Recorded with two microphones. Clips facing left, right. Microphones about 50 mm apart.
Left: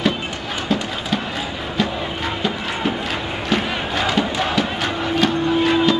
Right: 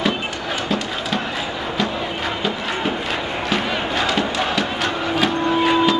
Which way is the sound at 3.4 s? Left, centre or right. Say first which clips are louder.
Left 1 dB; centre.